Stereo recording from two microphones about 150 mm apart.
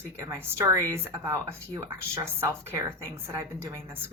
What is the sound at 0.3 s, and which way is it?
Speech, 15° right (ahead or behind).